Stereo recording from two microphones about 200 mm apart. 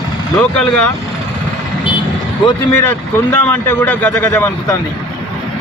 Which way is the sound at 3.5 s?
10° left (ahead or behind).